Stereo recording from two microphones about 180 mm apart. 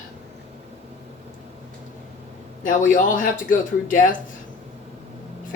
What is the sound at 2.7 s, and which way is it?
Speech, 45° left (ahead or behind).